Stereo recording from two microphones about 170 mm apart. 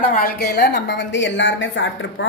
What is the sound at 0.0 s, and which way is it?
A woman's voice, 55° left (ahead or behind).